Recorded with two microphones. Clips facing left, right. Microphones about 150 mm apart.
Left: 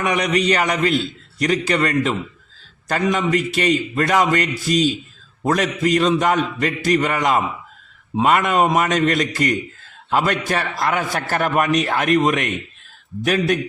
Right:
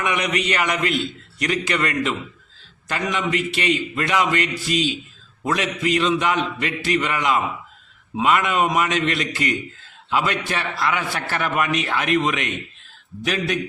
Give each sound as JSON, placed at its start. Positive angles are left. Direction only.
{"t": 0.0, "sound": "a man's voice", "side_deg": 35}